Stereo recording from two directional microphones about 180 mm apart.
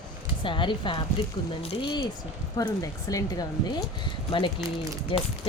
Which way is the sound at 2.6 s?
20° left (ahead or behind).